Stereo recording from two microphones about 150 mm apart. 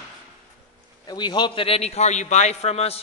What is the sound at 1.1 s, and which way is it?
A man's voice, 30° left (ahead or behind).